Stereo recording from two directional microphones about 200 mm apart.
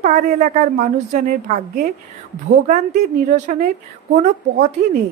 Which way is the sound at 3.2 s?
40° right (ahead or behind).